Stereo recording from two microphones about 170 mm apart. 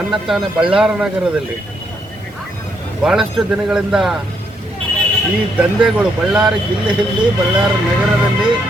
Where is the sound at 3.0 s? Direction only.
5° right (ahead or behind).